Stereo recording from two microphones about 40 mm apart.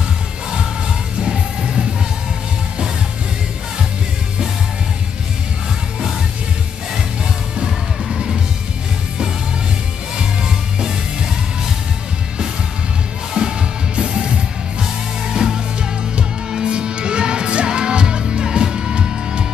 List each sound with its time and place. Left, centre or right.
1.2 s music: centre
7.5 s music: centre
10.1 s music: centre
13.3 s music: centre